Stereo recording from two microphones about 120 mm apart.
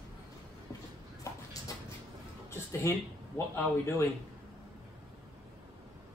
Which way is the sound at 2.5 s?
25° left (ahead or behind).